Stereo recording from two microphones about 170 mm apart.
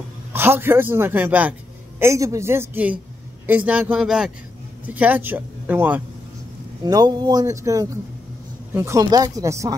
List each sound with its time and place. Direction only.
0.3 s a man's voice: 15° right (ahead or behind)
6.8 s a man's voice: 25° right (ahead or behind)